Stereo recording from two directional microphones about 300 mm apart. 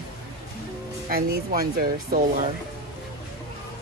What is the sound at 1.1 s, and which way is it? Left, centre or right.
Speech, right.